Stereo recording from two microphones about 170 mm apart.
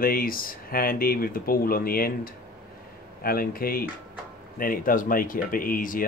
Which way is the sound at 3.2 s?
60° left (ahead or behind).